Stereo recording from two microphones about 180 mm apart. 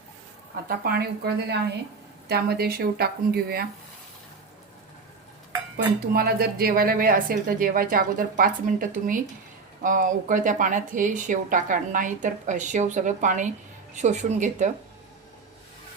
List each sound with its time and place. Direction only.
0.9 s speech: 60° right (ahead or behind)
5.7 s speech: 60° right (ahead or behind); by 14.7 s 40° right (ahead or behind)